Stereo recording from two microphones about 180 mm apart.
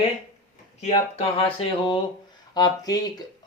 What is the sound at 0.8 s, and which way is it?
Speech, 35° left (ahead or behind).